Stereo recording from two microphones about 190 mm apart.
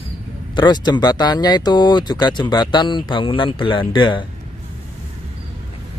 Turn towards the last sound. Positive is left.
turn(degrees=25)  # may be behind; listen again after turning